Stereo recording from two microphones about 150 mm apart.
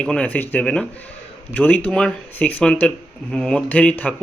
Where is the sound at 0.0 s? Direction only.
10° left (ahead or behind).